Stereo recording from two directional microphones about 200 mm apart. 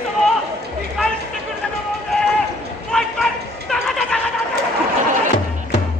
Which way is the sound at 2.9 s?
Centre (ahead or behind).